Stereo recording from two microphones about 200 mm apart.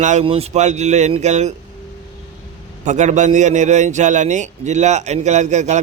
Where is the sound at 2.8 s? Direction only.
35° right (ahead or behind).